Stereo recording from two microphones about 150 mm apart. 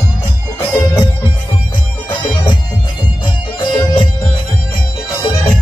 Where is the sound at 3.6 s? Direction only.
35° left (ahead or behind).